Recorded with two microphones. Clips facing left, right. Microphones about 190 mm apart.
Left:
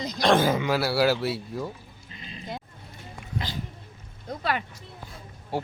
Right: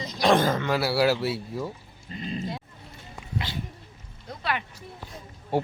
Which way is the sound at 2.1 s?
40° right (ahead or behind).